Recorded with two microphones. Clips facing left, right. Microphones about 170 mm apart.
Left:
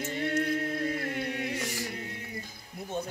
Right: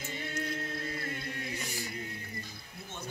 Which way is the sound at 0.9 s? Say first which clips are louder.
Left 7 dB; 70° left (ahead or behind).